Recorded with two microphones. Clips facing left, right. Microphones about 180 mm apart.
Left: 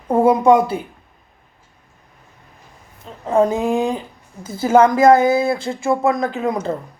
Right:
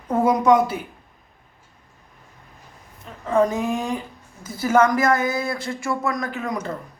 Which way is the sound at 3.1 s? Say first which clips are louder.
Left 3 dB; 30° left (ahead or behind).